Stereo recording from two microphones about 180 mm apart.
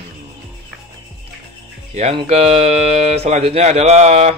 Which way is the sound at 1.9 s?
35° right (ahead or behind).